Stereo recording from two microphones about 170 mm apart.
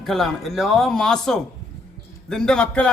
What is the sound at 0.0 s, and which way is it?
A man's voice, centre (ahead or behind).